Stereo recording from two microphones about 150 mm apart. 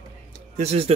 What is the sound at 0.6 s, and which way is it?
Speech, 45° right (ahead or behind).